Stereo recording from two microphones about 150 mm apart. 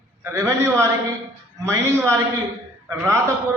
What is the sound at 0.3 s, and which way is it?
A man's voice, 15° right (ahead or behind).